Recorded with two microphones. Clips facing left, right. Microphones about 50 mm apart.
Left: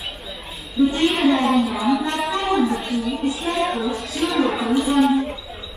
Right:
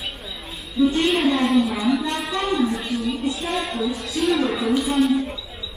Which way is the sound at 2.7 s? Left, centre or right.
Centre.